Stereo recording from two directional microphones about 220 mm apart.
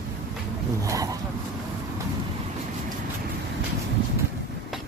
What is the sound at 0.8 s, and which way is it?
Vehicle, 15° right (ahead or behind).